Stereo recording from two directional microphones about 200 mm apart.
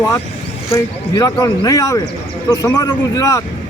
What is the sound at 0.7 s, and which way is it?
Speech, 20° left (ahead or behind).